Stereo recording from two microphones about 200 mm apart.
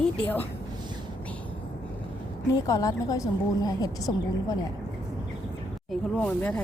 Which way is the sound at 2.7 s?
15° left (ahead or behind).